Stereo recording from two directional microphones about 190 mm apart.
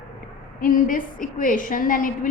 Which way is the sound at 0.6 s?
45° left (ahead or behind).